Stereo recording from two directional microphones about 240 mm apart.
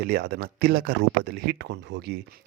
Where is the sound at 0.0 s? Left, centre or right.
Right.